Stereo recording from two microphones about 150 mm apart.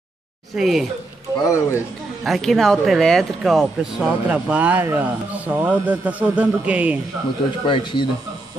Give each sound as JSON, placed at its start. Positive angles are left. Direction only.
{"t": 0.6, "sound": "speech", "side_deg": 0}
{"t": 1.4, "sound": "a man's voice", "side_deg": 20}
{"t": 2.2, "sound": "speech", "side_deg": 0}
{"t": 7.6, "sound": "speech", "side_deg": 35}